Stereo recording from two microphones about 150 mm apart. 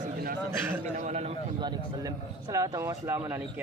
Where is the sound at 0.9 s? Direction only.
45° right (ahead or behind).